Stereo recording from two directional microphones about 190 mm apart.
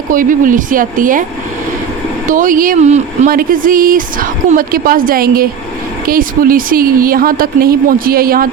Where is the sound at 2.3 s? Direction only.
45° right (ahead or behind).